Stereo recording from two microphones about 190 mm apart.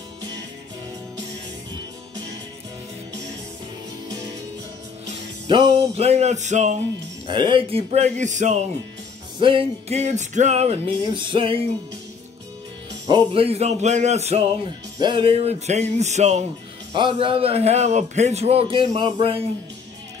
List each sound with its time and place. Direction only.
5.5 s a man's voice: 30° right (ahead or behind)
7.2 s a man's voice: 25° right (ahead or behind)
9.4 s a man's voice: 30° right (ahead or behind)
13.0 s a man's voice: 25° right (ahead or behind)
16.9 s a man's voice: 25° right (ahead or behind)